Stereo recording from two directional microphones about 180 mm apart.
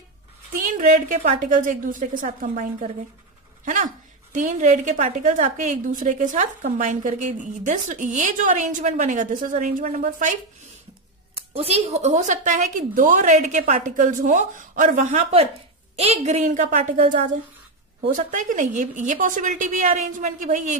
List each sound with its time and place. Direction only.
0.7 s a woman's voice: 45° right (ahead or behind)
11.5 s a woman's voice: 35° right (ahead or behind)